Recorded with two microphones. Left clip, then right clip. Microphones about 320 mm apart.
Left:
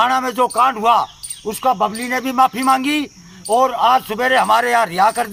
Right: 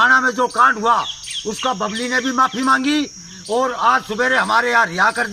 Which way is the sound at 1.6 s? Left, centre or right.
Left.